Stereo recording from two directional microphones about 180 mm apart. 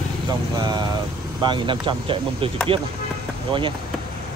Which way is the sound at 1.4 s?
25° right (ahead or behind).